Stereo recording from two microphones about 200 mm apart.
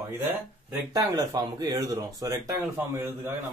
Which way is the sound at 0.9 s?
20° right (ahead or behind).